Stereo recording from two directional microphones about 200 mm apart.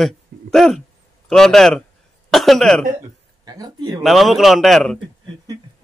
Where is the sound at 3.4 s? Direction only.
20° right (ahead or behind).